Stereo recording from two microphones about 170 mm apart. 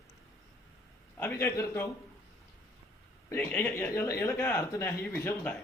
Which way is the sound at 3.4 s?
10° left (ahead or behind).